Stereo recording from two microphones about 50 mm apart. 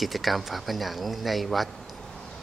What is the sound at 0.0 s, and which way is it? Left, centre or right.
Speech, centre.